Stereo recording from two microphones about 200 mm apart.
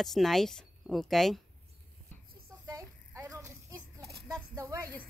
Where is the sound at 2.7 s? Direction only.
15° right (ahead or behind).